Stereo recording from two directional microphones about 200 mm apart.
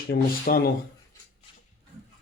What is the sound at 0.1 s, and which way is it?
Speech, 50° left (ahead or behind).